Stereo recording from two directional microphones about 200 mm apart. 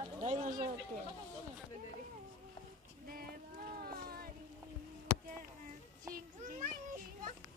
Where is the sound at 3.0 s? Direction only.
45° right (ahead or behind).